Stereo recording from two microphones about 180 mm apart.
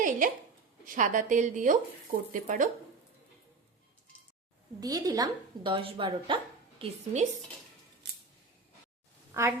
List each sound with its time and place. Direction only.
0.9 s speech: 45° right (ahead or behind)
4.8 s speech: 20° right (ahead or behind)
8.0 s scissors: 70° right (ahead or behind)
9.3 s a woman's voice: 15° right (ahead or behind)